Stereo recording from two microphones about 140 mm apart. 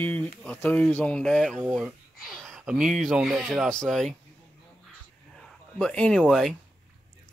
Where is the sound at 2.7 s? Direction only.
70° right (ahead or behind).